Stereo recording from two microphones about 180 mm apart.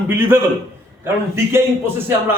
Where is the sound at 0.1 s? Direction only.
10° right (ahead or behind).